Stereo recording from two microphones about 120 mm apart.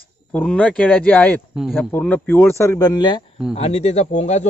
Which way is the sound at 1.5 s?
5° right (ahead or behind).